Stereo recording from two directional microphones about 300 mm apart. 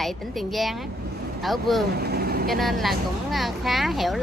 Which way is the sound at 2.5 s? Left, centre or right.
Centre.